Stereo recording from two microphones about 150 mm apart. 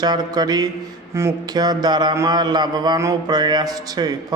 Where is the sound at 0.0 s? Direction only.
25° right (ahead or behind).